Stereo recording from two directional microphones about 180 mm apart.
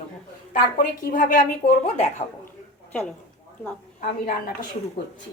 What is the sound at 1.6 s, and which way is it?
Speech, 35° left (ahead or behind).